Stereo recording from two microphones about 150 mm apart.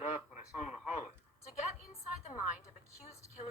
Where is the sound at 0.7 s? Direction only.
5° right (ahead or behind).